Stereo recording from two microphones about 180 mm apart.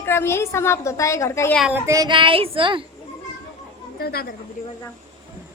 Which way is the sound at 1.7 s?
20° right (ahead or behind).